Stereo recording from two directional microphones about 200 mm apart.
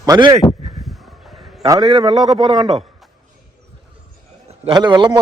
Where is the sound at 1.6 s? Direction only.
15° right (ahead or behind).